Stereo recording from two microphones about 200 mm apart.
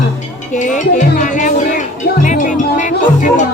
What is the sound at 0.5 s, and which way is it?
Music, 40° left (ahead or behind).